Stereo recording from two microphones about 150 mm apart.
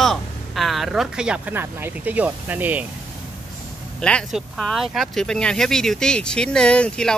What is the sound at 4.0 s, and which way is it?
Speech, 5° left (ahead or behind).